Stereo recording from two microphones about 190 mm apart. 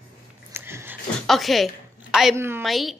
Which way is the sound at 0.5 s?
10° right (ahead or behind).